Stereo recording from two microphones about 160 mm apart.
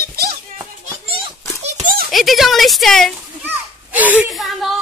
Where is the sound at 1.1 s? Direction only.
40° right (ahead or behind).